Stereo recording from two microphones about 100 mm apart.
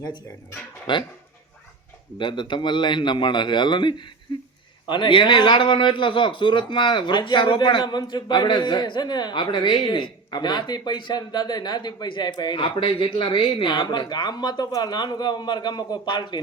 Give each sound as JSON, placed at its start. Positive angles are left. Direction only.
{"t": 0.9, "sound": "a man's voice", "side_deg": 50}
{"t": 2.1, "sound": "a man's voice", "side_deg": 55}